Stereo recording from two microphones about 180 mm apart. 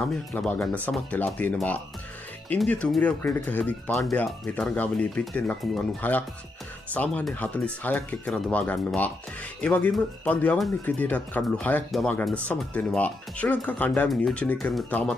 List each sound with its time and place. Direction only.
0.0 s speech: 5° left (ahead or behind)